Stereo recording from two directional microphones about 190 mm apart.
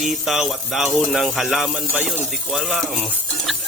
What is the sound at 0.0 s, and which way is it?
Music, centre (ahead or behind).